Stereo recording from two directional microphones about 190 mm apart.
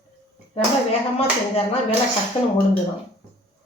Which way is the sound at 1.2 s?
30° left (ahead or behind).